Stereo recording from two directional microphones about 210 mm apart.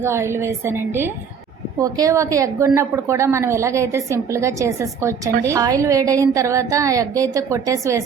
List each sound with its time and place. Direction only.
0.0 s a woman's voice: 10° right (ahead or behind)